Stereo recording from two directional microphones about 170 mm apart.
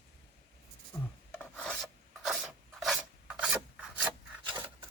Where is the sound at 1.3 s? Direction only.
10° left (ahead or behind).